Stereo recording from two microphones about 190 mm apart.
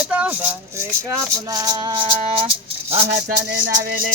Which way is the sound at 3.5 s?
70° right (ahead or behind).